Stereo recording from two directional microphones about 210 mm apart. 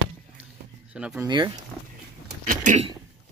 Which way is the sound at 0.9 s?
5° right (ahead or behind).